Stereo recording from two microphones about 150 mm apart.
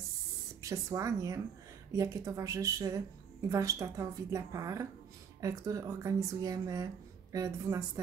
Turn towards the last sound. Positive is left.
turn(degrees=-25)  # may be behind; listen again after turning